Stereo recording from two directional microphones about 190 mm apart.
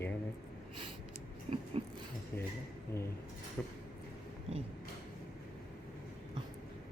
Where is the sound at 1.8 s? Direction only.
30° right (ahead or behind).